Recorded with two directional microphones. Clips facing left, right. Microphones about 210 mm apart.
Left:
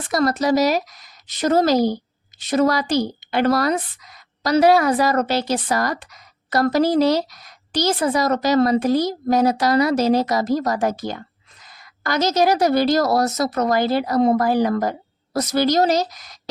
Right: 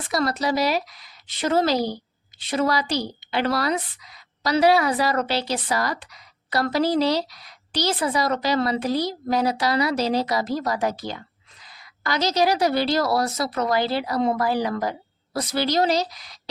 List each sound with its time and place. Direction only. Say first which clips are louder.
0.1 s a woman's voice: left 5 dB; 45° left (ahead or behind)